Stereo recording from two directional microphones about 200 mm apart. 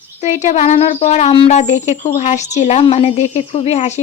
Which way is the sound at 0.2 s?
35° left (ahead or behind).